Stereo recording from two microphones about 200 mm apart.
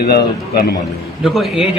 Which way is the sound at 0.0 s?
55° left (ahead or behind).